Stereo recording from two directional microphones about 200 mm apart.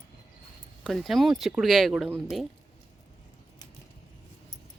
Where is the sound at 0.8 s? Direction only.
Centre (ahead or behind).